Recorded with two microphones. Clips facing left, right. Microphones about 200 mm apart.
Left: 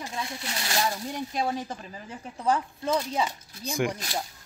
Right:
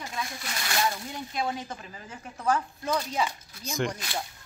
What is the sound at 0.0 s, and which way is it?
Speech, 25° left (ahead or behind).